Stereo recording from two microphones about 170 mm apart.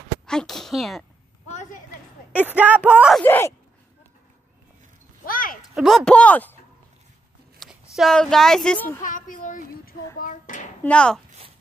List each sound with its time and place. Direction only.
0.3 s speech: 5° left (ahead or behind)
1.5 s a sound: 45° left (ahead or behind)
2.3 s speech: 10° right (ahead or behind)
3.2 s speech: 15° left (ahead or behind)
5.2 s a sound: 55° left (ahead or behind)
5.8 s speech: centre (ahead or behind)
7.9 s speech: centre (ahead or behind)
9.0 s speech: 50° left (ahead or behind)
10.8 s speech: 5° left (ahead or behind)